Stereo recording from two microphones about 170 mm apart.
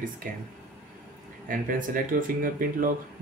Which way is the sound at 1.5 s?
55° right (ahead or behind).